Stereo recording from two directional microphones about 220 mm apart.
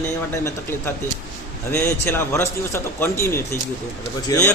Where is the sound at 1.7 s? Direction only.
10° left (ahead or behind).